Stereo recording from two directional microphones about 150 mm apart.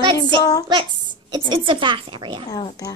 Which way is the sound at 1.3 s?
35° right (ahead or behind).